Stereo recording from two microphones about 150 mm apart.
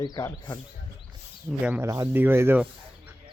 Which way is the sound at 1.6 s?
15° right (ahead or behind).